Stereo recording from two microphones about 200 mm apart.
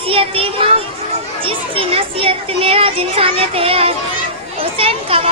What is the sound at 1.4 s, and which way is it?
Speech, 30° right (ahead or behind).